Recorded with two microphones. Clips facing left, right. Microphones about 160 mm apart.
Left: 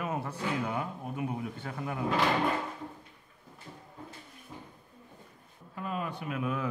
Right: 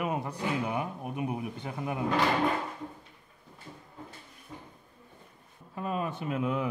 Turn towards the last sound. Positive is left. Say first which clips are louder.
# right 3 dB
turn(degrees=-20)  # may be behind; listen again after turning